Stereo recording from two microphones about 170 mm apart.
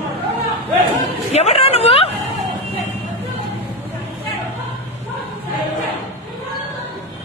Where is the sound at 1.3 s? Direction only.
40° left (ahead or behind).